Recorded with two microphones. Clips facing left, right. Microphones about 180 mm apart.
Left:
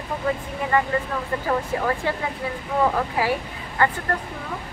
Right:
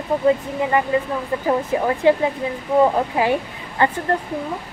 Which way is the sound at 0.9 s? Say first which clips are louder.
Right 4 dB; 15° right (ahead or behind).